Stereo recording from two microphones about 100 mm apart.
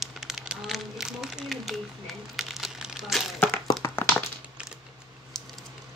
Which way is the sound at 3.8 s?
35° left (ahead or behind).